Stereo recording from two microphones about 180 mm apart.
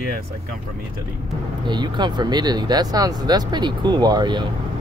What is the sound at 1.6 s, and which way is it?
Speech, 25° right (ahead or behind).